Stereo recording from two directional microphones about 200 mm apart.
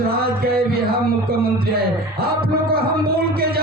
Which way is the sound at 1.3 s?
50° right (ahead or behind).